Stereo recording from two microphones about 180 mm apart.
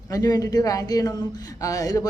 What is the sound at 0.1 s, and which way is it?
Speech, 20° left (ahead or behind).